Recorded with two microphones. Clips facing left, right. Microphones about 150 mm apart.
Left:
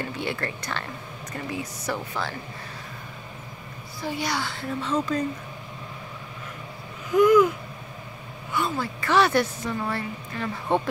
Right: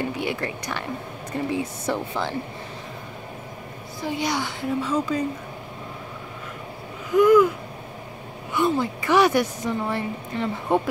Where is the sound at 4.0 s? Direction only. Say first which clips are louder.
Right 3 dB; 20° right (ahead or behind).